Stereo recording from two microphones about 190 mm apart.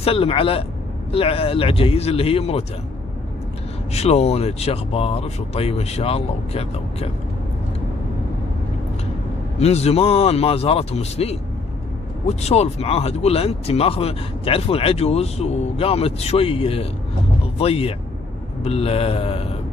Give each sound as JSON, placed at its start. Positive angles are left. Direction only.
{"t": 0.0, "sound": "speech", "side_deg": 30}
{"t": 3.9, "sound": "speech", "side_deg": 35}
{"t": 9.6, "sound": "speech", "side_deg": 35}